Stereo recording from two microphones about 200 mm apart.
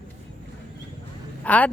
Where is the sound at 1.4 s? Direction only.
10° left (ahead or behind).